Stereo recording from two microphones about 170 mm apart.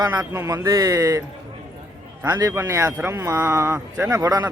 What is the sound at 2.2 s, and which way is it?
Speech, 15° right (ahead or behind).